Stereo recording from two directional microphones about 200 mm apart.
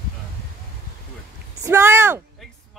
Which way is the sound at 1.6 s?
15° right (ahead or behind).